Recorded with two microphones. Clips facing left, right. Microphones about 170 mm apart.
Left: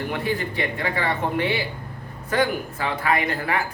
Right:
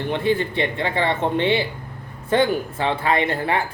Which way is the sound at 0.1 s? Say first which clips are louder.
Right 5 dB; 25° right (ahead or behind).